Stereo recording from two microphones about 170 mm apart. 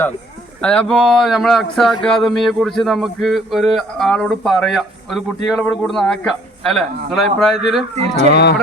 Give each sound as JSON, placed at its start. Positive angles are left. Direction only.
{"t": 0.6, "sound": "a man's voice", "side_deg": 5}
{"t": 8.3, "sound": "speech", "side_deg": 80}